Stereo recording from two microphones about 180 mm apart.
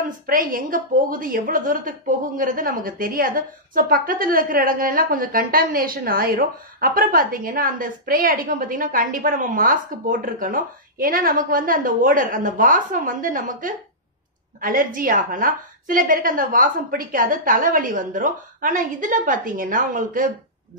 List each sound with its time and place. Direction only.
0.3 s a woman's voice: 50° right (ahead or behind)